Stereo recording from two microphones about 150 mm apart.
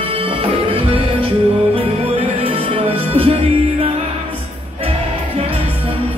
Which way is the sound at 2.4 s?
35° right (ahead or behind).